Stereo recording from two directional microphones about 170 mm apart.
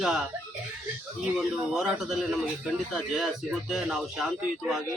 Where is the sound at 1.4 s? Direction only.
5° right (ahead or behind).